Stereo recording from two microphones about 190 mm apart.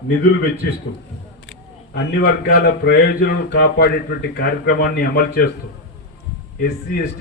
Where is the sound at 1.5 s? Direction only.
55° left (ahead or behind).